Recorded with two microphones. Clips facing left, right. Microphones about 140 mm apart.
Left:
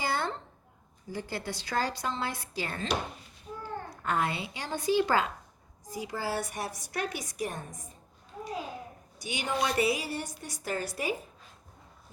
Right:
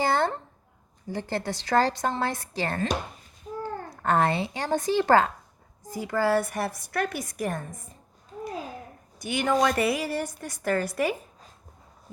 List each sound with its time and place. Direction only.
0.0 s a sound: 50° right (ahead or behind)
1.1 s a woman's voice: 50° right (ahead or behind)
4.0 s a woman's voice: 50° right (ahead or behind)
9.2 s a woman's voice: 50° right (ahead or behind)